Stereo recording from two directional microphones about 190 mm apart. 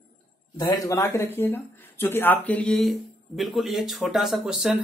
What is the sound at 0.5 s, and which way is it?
Speech, 15° left (ahead or behind).